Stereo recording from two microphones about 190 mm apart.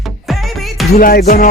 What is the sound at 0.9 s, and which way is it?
Speech, 50° left (ahead or behind).